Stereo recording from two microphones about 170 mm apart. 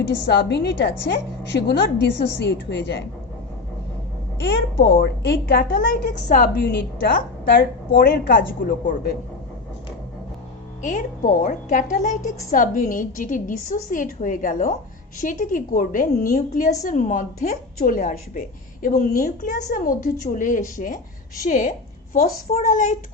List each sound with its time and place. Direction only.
0.3 s a woman's voice: 75° left (ahead or behind); by 3.0 s 90° left
4.4 s a woman's voice: 85° left; by 9.1 s 55° left (ahead or behind)
11.4 s a woman's voice: 50° left (ahead or behind)